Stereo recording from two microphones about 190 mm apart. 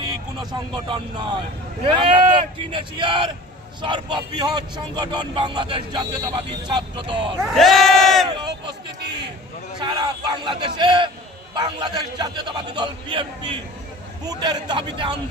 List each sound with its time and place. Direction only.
0.9 s a man's voice: 25° right (ahead or behind)
7.4 s crowd: centre (ahead or behind)
9.8 s a man's voice: 20° right (ahead or behind)